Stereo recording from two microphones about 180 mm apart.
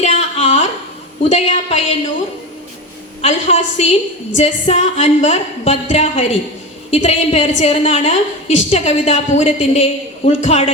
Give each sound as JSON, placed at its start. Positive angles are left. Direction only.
{"t": 0.0, "sound": "a sound", "side_deg": 30}
{"t": 1.2, "sound": "a woman's voice", "side_deg": 35}
{"t": 3.2, "sound": "a woman's voice", "side_deg": 35}